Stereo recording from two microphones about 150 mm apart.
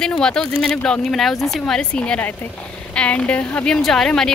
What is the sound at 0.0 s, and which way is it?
A woman's voice, 5° left (ahead or behind).